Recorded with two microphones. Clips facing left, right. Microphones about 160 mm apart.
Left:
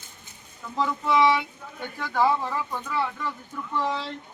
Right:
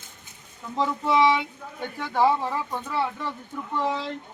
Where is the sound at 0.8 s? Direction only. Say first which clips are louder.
Right 1 dB; 25° right (ahead or behind).